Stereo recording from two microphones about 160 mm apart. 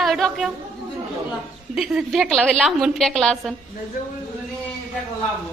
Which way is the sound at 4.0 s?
70° left (ahead or behind).